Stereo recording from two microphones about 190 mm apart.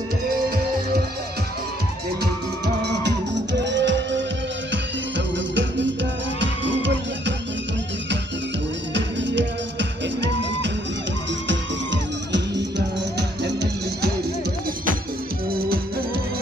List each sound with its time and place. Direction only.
2.6 s music: 65° right (ahead or behind)
8.9 s music: 70° right (ahead or behind)
15.5 s music: 50° right (ahead or behind)